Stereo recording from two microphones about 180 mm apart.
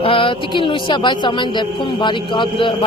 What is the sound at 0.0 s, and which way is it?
A woman's voice, 30° left (ahead or behind).